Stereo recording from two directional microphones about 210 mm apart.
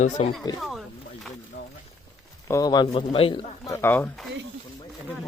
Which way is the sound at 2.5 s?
15° left (ahead or behind).